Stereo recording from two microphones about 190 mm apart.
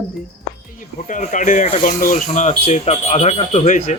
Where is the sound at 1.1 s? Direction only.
40° left (ahead or behind).